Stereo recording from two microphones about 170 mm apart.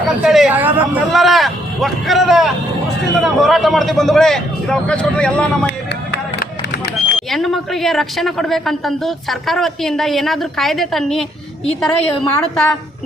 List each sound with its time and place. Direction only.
0.2 s a man's voice: 5° right (ahead or behind)
6.4 s vehicle: 65° left (ahead or behind)
7.2 s a man's voice: centre (ahead or behind)